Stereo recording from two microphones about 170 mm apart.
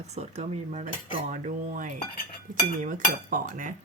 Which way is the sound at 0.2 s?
40° right (ahead or behind).